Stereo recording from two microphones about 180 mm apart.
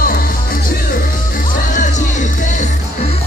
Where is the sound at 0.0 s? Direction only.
50° left (ahead or behind).